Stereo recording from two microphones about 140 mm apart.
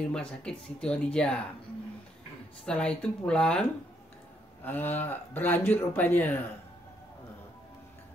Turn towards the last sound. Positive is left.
turn(degrees=10)  # may be behind; listen again after turning